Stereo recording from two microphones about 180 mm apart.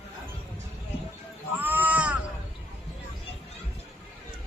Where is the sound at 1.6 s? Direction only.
10° right (ahead or behind).